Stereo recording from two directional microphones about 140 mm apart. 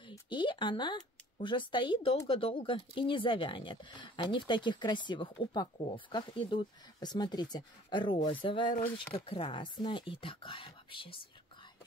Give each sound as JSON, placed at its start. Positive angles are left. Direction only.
{"t": 0.1, "sound": "speech", "side_deg": 35}